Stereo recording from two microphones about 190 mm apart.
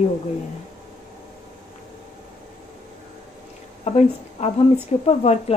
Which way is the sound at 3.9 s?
35° left (ahead or behind).